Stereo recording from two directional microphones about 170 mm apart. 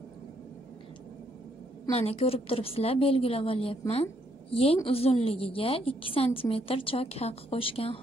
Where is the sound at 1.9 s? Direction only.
40° left (ahead or behind).